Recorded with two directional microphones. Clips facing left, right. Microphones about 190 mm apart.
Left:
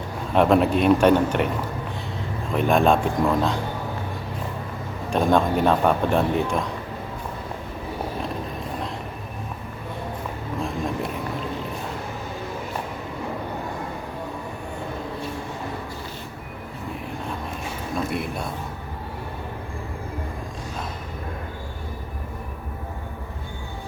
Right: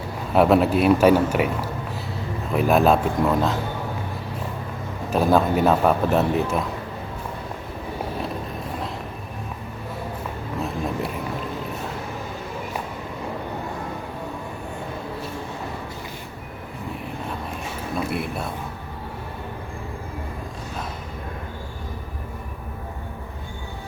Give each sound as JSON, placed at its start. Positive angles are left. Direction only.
{"t": 0.3, "sound": "speech", "side_deg": -5}
{"t": 2.5, "sound": "speech", "side_deg": -5}
{"t": 5.1, "sound": "speech", "side_deg": -5}
{"t": 17.9, "sound": "a sound", "side_deg": -5}